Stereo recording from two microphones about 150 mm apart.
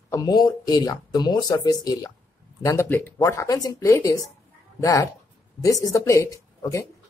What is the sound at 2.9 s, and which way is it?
Speech, 15° left (ahead or behind).